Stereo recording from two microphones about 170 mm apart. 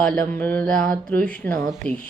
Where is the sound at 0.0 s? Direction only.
5° left (ahead or behind).